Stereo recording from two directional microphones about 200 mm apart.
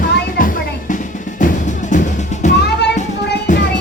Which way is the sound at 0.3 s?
45° left (ahead or behind).